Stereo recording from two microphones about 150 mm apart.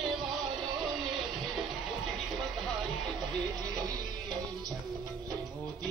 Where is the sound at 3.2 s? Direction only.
30° right (ahead or behind).